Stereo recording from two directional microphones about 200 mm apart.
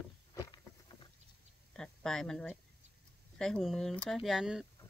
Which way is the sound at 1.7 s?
5° left (ahead or behind).